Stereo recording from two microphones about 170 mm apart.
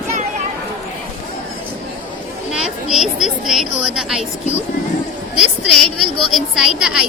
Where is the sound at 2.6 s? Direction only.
5° right (ahead or behind).